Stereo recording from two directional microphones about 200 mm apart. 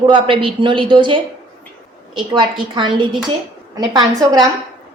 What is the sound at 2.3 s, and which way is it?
A woman's voice, 25° right (ahead or behind).